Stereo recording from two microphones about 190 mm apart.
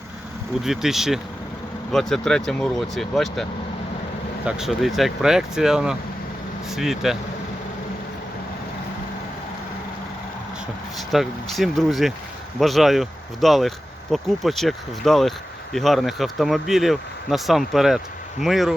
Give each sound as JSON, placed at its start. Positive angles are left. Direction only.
{"t": 0.6, "sound": "speech", "side_deg": 0}
{"t": 4.4, "sound": "speech", "side_deg": -5}
{"t": 10.9, "sound": "speech", "side_deg": 0}